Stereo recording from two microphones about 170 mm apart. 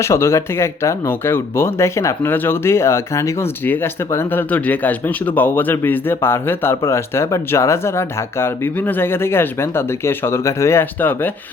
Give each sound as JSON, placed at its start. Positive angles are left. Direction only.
{"t": 0.0, "sound": "speech", "side_deg": 15}